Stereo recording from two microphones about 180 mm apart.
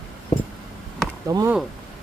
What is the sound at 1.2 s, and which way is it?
Speech, 20° right (ahead or behind).